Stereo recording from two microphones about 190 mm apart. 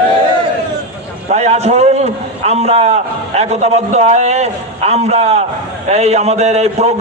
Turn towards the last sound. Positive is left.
turn(degrees=-35)  # may be behind; listen again after turning